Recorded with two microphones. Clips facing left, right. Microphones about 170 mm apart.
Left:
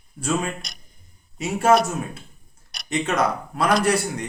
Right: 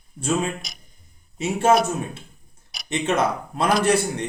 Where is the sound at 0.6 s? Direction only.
Centre (ahead or behind).